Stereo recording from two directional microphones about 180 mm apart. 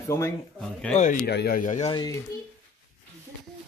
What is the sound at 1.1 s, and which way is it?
Speech, 60° left (ahead or behind).